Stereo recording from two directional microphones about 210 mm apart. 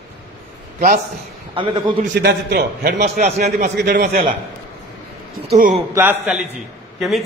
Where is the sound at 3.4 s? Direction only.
35° right (ahead or behind).